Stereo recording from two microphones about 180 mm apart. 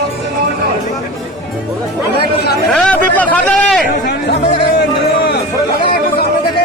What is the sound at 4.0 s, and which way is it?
Chatter, 60° left (ahead or behind).